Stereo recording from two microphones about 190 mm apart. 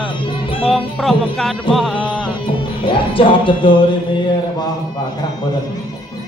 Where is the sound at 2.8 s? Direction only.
25° left (ahead or behind).